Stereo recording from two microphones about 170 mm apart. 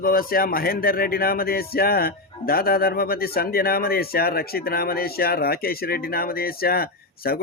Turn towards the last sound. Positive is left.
turn(degrees=65)  # may be behind; listen again after turning